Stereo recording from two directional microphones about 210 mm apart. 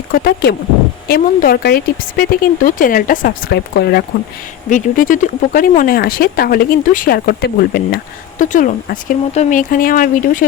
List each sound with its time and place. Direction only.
0.1 s a woman's voice: 45° left (ahead or behind)